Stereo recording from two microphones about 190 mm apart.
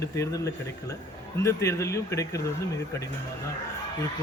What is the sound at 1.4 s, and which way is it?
Speech, 15° left (ahead or behind).